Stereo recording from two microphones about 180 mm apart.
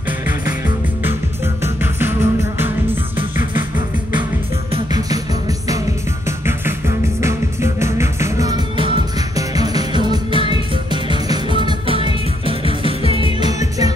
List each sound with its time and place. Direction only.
1.6 s music: 10° right (ahead or behind)
4.7 s music: 20° right (ahead or behind)
6.2 s music: 15° right (ahead or behind)
13.2 s music: 25° right (ahead or behind)